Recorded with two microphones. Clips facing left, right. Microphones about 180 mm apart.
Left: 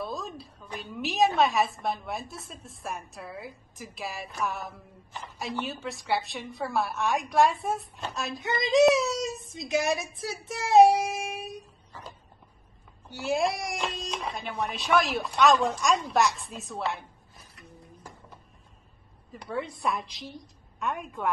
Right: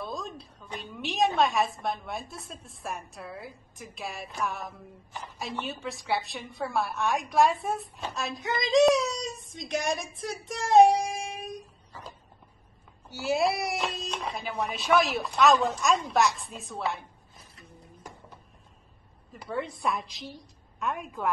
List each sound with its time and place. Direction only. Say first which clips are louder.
0.0 s a woman's voice: left 1 dB; centre (ahead or behind)
11.9 s a sound: even; centre (ahead or behind)
13.1 s a woman's voice: right 1 dB; centre (ahead or behind)
17.4 s music: left 1 dB; 25° right (ahead or behind)
19.3 s a woman's voice: even; centre (ahead or behind)